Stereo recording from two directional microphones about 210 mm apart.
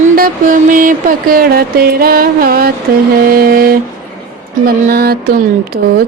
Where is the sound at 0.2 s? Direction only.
40° right (ahead or behind).